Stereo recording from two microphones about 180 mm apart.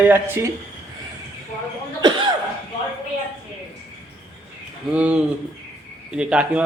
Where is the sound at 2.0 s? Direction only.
25° right (ahead or behind).